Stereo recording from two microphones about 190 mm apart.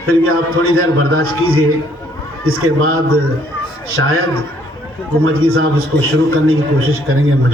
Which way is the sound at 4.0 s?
90° right.